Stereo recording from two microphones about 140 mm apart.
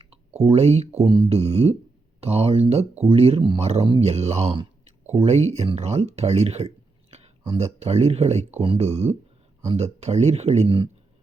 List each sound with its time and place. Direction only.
0.3 s speech: 50° right (ahead or behind)
1.0 s speech: 35° right (ahead or behind)